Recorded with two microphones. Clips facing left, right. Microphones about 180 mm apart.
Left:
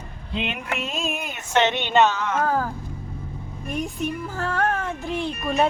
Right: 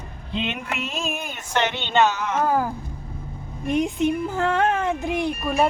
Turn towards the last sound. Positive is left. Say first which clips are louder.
# right 1 dB
turn(degrees=-5)  # may be behind; listen again after turning